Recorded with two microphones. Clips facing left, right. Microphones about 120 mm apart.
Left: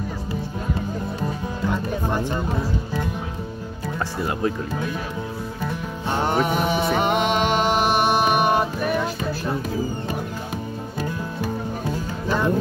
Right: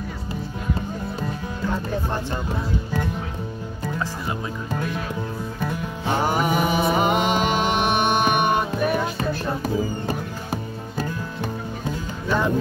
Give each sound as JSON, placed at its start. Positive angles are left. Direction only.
{"t": 4.0, "sound": "music", "side_deg": 60}
{"t": 5.7, "sound": "music", "side_deg": 0}